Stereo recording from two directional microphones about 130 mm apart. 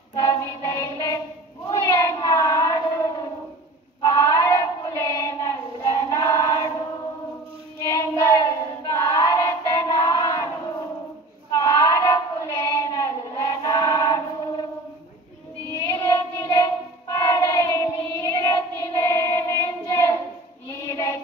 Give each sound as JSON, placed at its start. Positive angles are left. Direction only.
{"t": 0.1, "sound": "child singing", "side_deg": 25}
{"t": 7.8, "sound": "child singing", "side_deg": 25}
{"t": 11.5, "sound": "child singing", "side_deg": 25}
{"t": 15.7, "sound": "child singing", "side_deg": 25}